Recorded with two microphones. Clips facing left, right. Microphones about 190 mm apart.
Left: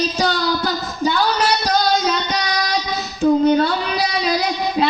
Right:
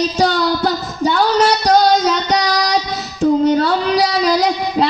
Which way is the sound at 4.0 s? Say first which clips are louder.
Right 4 dB; 80° right.